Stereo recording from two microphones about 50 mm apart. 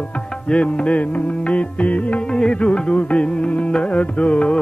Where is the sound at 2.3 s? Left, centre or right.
Centre.